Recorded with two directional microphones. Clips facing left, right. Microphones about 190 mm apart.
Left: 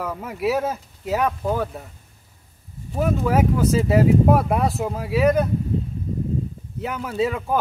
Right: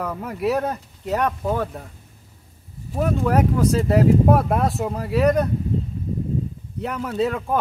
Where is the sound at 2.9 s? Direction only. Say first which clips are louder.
Even; centre (ahead or behind).